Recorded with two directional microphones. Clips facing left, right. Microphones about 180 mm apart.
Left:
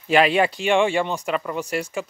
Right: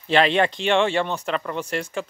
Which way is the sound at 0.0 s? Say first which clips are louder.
Left 1 dB; 10° left (ahead or behind).